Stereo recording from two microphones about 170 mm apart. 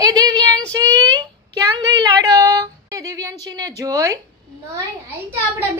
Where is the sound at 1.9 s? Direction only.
20° right (ahead or behind).